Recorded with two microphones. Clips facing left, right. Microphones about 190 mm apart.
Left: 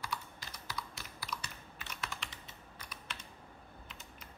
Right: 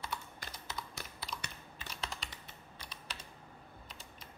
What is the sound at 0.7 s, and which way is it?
Computer keyboard, 25° right (ahead or behind).